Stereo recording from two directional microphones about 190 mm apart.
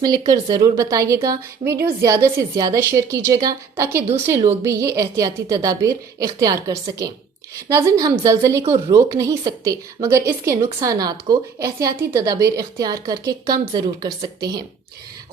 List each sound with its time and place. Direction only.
0.3 s a woman's voice: 20° right (ahead or behind)